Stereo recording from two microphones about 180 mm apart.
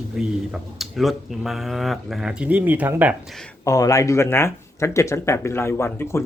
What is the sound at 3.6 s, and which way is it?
Speech, 15° left (ahead or behind).